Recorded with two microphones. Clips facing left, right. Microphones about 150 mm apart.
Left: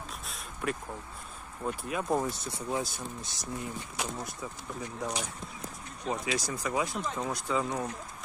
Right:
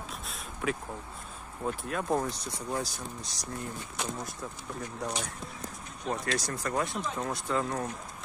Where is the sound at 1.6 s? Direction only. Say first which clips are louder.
Even; 5° left (ahead or behind).